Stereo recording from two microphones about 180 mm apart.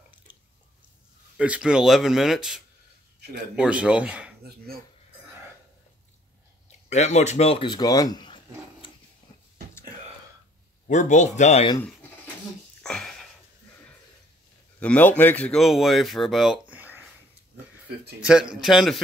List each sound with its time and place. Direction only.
0.3 s drip: 10° right (ahead or behind)
1.3 s speech: 5° right (ahead or behind)
6.9 s a man's voice: 40° left (ahead or behind); by 8.4 s 25° left (ahead or behind)
10.9 s speech: 40° left (ahead or behind)
12.8 s a sound: 5° left (ahead or behind)
14.8 s speech: 10° left (ahead or behind); by 17.0 s 10° right (ahead or behind)
18.2 s speech: 5° right (ahead or behind)